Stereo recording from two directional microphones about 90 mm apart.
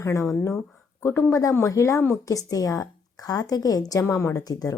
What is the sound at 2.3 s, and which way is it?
A woman's voice, 40° left (ahead or behind).